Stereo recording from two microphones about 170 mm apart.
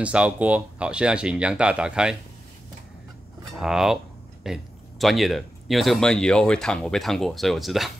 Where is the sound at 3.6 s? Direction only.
5° right (ahead or behind).